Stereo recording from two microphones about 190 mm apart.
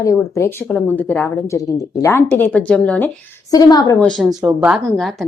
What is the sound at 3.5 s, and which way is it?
Speech, 20° left (ahead or behind).